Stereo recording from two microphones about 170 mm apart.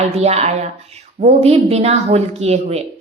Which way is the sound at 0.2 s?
40° right (ahead or behind).